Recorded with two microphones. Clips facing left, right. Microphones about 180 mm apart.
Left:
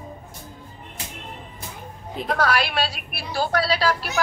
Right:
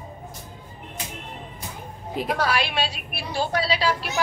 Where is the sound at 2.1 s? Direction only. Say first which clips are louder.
Left 1 dB; 5° right (ahead or behind).